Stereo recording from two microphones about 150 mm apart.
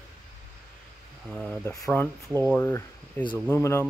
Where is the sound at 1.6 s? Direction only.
20° left (ahead or behind).